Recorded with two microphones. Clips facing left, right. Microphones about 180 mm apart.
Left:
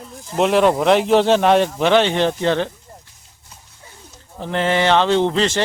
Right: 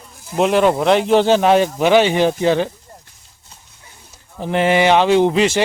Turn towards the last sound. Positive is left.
turn(degrees=-10)  # may be behind; listen again after turning